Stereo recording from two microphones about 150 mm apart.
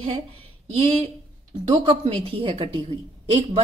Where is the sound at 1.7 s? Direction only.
40° right (ahead or behind).